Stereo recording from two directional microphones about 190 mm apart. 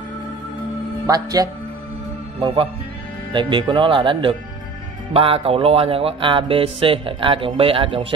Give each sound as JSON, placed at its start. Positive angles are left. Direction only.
{"t": 1.0, "sound": "music", "side_deg": -20}